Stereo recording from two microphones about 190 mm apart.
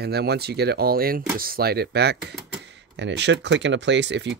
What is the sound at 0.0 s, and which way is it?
Speech, 60° right (ahead or behind).